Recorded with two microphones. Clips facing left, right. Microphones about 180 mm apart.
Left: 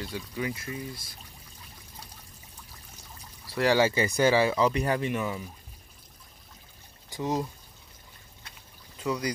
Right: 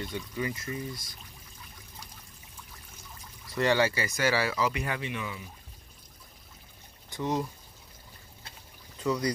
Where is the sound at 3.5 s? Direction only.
10° left (ahead or behind); by 5.4 s 45° left (ahead or behind).